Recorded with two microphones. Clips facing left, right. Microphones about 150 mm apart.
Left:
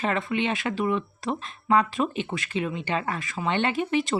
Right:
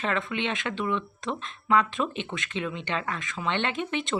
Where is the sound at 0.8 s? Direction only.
40° left (ahead or behind).